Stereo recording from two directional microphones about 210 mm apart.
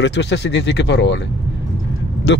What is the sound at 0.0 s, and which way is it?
Speech, 55° left (ahead or behind).